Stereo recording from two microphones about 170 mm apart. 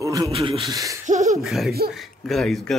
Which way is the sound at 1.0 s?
45° right (ahead or behind).